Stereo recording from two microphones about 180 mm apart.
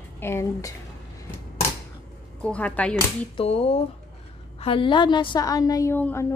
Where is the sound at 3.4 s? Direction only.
35° left (ahead or behind).